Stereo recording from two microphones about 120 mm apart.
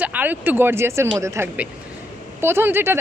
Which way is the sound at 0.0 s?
15° right (ahead or behind).